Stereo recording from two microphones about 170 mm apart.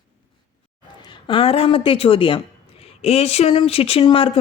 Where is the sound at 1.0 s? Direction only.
30° left (ahead or behind).